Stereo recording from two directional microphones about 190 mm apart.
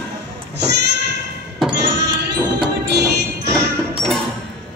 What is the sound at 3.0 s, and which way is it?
Music, 15° right (ahead or behind).